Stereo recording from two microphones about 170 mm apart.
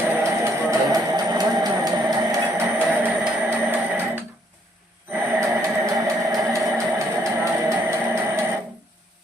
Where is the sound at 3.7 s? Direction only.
10° right (ahead or behind).